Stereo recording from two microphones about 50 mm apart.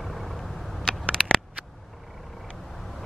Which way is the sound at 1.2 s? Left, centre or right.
Centre.